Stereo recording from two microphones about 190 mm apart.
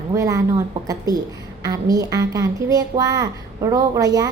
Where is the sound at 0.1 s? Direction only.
15° right (ahead or behind).